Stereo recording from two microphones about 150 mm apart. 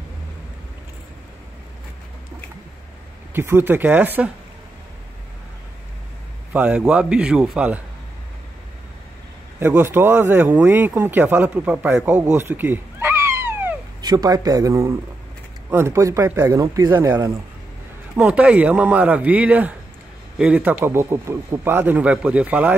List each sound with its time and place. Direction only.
3.3 s a man's voice: 15° right (ahead or behind)
6.5 s a man's voice: 10° right (ahead or behind)
9.6 s speech: 15° right (ahead or behind)
14.0 s speech: 25° right (ahead or behind)
18.1 s a man's voice: 5° right (ahead or behind)